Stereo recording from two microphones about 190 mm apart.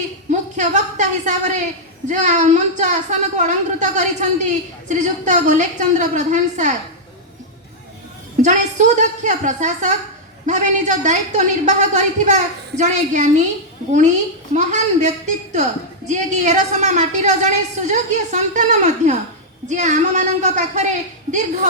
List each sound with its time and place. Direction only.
0.3 s a woman's voice: 40° right (ahead or behind)
8.4 s a woman's voice: 40° right (ahead or behind)
14.5 s a woman's voice: 40° right (ahead or behind)